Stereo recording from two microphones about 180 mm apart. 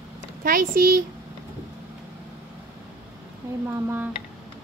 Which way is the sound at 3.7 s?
10° right (ahead or behind).